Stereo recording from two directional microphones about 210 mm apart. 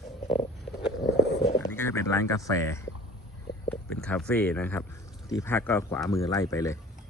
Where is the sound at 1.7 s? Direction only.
10° left (ahead or behind).